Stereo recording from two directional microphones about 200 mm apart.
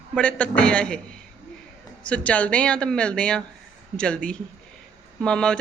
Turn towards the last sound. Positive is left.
turn(degrees=5)  # may be behind; listen again after turning